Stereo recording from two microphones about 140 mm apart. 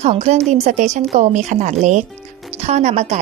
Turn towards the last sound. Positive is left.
turn(degrees=-55)  # may be behind; listen again after turning